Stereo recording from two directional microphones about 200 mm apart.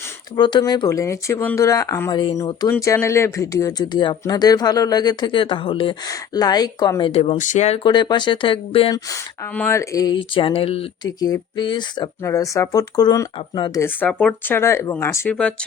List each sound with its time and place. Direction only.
0.3 s speech: 20° left (ahead or behind)
7.9 s speech: 20° left (ahead or behind)
9.6 s speech: 15° left (ahead or behind)